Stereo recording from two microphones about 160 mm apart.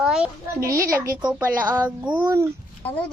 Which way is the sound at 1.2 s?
10° right (ahead or behind).